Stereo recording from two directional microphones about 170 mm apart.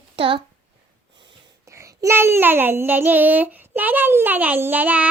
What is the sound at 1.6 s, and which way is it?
Child singing, 15° right (ahead or behind).